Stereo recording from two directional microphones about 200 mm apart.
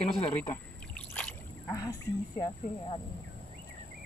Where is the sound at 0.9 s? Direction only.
5° left (ahead or behind).